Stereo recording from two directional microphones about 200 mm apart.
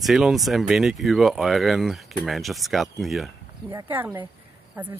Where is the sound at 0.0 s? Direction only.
Centre (ahead or behind).